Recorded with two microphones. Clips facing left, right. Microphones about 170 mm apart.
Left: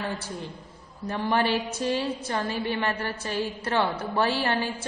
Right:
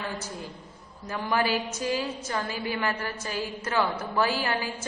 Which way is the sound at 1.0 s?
35° left (ahead or behind).